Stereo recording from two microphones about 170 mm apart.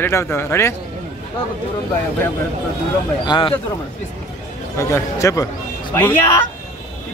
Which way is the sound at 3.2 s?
30° left (ahead or behind).